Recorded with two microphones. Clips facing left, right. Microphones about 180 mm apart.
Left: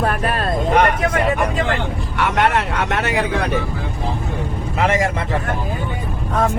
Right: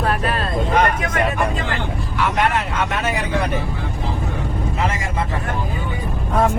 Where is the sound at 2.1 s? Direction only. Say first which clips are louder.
Left 2 dB; 70° left (ahead or behind).